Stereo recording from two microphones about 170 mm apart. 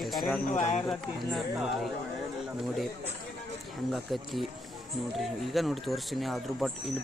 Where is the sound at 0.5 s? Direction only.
45° left (ahead or behind).